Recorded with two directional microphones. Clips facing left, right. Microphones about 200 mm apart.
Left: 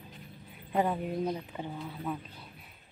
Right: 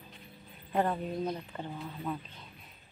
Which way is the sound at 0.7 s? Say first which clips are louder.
Left 1 dB; 10° left (ahead or behind).